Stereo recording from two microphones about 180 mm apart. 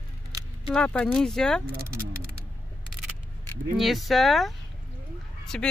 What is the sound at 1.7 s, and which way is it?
Speech, 55° right (ahead or behind).